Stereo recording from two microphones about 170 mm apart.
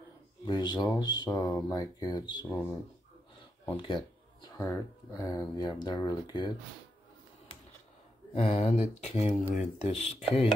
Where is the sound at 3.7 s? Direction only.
30° left (ahead or behind).